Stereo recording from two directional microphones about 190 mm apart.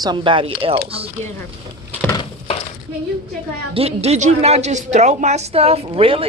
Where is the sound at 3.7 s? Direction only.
35° right (ahead or behind).